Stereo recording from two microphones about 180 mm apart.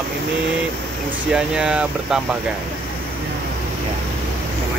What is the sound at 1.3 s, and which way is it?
Speech, 5° right (ahead or behind).